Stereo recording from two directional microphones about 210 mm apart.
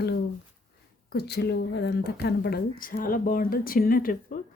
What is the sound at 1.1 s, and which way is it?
A woman's voice, 50° left (ahead or behind).